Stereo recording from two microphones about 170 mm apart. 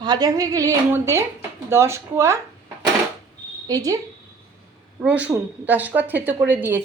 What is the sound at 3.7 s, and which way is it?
Speech, 20° right (ahead or behind).